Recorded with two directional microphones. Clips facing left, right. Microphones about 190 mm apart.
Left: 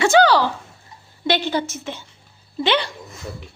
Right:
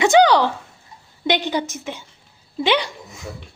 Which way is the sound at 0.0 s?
20° right (ahead or behind).